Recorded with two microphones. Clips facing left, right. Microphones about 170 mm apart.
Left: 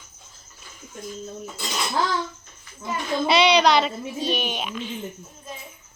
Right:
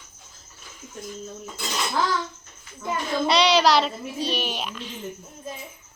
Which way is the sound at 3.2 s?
Centre (ahead or behind).